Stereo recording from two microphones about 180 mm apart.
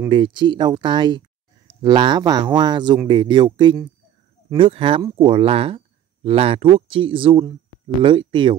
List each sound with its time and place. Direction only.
0.1 s speech: 25° right (ahead or behind)